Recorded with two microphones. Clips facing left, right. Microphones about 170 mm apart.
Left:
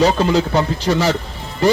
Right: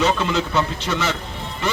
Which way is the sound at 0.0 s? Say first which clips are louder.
Left 5 dB; 35° left (ahead or behind).